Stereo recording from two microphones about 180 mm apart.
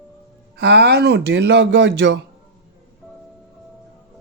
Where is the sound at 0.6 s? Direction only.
70° right (ahead or behind).